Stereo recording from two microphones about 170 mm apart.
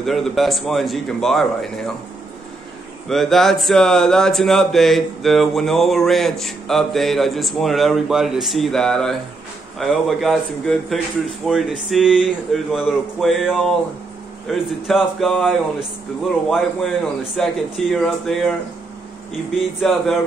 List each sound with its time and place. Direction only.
0.0 s speech: centre (ahead or behind)
3.1 s speech: centre (ahead or behind)
19.8 s speech: 5° left (ahead or behind)